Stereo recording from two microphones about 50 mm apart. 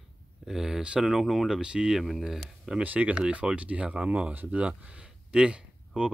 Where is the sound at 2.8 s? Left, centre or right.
Right.